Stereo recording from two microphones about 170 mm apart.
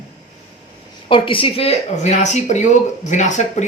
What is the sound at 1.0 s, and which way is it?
Speech, 30° left (ahead or behind).